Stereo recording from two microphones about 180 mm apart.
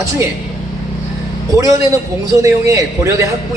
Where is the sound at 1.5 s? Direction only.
15° right (ahead or behind).